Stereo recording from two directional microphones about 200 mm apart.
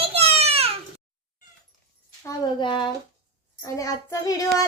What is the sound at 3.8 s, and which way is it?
Child singing, 15° left (ahead or behind).